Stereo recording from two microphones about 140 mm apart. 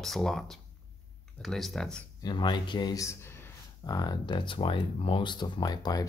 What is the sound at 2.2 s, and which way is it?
Speech, 35° left (ahead or behind).